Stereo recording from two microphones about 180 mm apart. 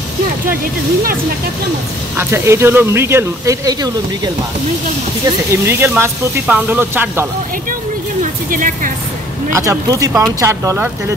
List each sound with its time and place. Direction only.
2.1 s speech: 15° right (ahead or behind)
5.5 s speech: 15° right (ahead or behind)
8.2 s speech: 45° right (ahead or behind)
9.5 s speech: 15° right (ahead or behind)